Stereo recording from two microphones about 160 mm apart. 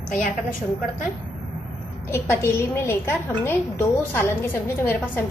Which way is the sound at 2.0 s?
15° left (ahead or behind).